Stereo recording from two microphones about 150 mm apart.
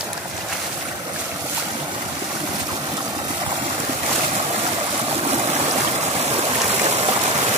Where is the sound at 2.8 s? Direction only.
25° right (ahead or behind).